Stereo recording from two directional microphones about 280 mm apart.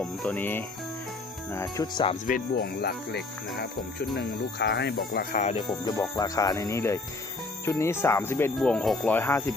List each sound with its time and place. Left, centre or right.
0.0 s speech: centre
2.2 s speech: left
5.9 s speech: centre